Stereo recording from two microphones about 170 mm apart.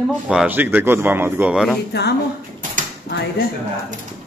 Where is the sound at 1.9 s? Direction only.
75° left (ahead or behind).